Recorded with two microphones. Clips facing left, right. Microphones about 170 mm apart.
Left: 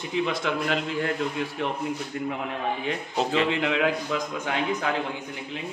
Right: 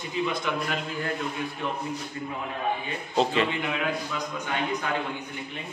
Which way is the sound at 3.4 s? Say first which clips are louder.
Left 5 dB; 90° left.